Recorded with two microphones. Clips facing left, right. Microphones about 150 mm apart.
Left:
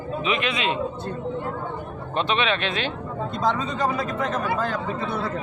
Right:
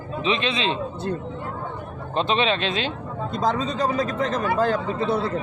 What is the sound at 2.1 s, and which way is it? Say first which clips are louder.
Speech: right 2 dB; 30° right (ahead or behind).